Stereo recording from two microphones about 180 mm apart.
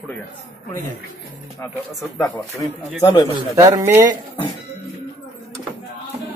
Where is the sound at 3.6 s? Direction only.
15° right (ahead or behind).